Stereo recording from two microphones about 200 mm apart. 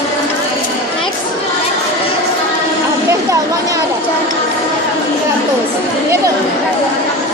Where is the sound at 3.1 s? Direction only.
15° right (ahead or behind).